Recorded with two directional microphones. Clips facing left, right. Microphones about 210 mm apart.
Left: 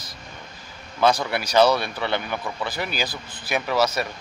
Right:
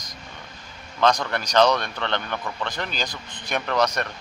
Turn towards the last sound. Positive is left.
turn(degrees=5)  # may be behind; listen again after turning